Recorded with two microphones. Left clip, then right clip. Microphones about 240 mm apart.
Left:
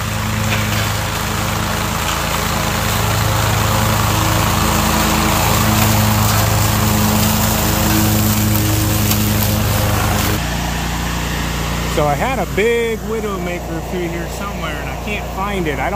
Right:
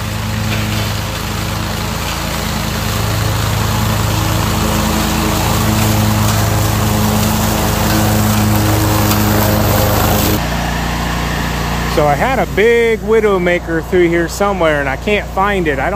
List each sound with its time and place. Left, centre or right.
4.8 s vehicle: centre
12.0 s speech: centre
14.6 s speech: centre